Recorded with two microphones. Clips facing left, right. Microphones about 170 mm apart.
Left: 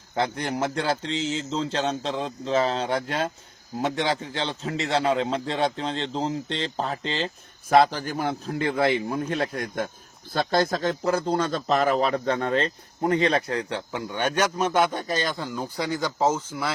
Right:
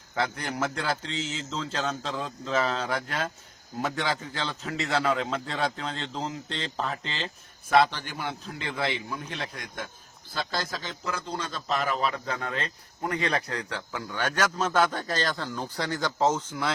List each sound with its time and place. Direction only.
0.1 s a man's voice: 30° left (ahead or behind); by 16.7 s 5° left (ahead or behind)